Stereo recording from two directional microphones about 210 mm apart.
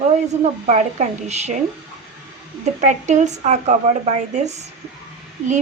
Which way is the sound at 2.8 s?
35° right (ahead or behind).